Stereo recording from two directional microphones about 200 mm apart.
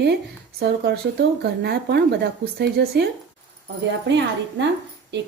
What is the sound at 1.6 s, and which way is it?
A woman's voice, 55° right (ahead or behind).